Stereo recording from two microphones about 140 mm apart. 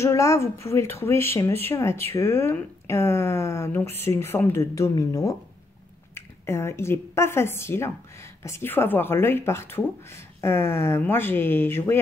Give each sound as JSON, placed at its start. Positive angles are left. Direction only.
{"t": 0.0, "sound": "a woman's voice", "side_deg": 20}